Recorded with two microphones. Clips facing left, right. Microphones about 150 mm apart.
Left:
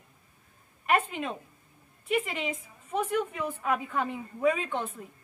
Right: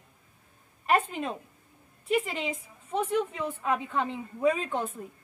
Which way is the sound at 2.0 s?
35° right (ahead or behind).